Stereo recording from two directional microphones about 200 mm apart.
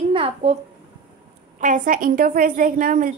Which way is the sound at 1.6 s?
40° right (ahead or behind).